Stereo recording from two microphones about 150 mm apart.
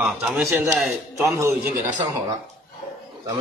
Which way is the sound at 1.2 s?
15° right (ahead or behind).